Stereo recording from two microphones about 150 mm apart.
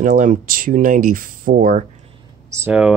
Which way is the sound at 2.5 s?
15° right (ahead or behind).